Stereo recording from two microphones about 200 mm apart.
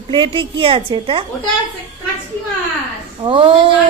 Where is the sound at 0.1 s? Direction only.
25° right (ahead or behind).